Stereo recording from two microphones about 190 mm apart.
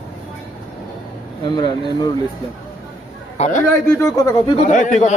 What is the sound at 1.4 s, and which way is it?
Speech, 25° left (ahead or behind).